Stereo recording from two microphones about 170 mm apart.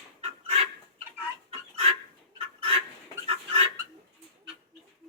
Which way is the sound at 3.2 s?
35° right (ahead or behind).